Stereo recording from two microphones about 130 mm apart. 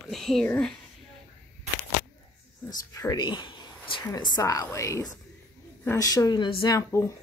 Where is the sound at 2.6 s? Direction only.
25° left (ahead or behind).